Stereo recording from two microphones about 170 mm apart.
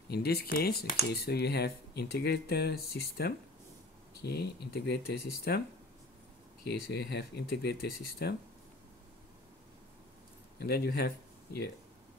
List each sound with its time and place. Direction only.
0.1 s speech: 65° left (ahead or behind)
6.9 s speech: 75° left (ahead or behind)
10.6 s speech: 70° left (ahead or behind)